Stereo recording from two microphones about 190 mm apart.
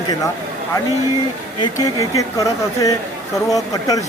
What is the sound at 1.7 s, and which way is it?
Speech, 15° left (ahead or behind).